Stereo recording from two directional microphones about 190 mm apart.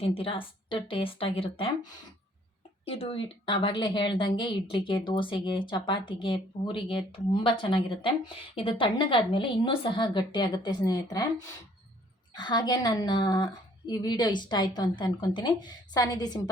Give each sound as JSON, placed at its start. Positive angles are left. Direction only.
{"t": 0.0, "sound": "a woman's voice", "side_deg": 30}